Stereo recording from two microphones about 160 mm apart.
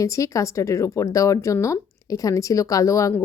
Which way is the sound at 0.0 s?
20° left (ahead or behind).